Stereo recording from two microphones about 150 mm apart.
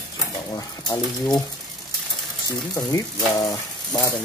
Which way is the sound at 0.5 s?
25° left (ahead or behind).